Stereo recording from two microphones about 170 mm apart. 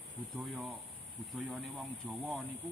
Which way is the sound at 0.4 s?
10° right (ahead or behind).